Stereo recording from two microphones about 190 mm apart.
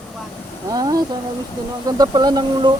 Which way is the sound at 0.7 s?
20° right (ahead or behind).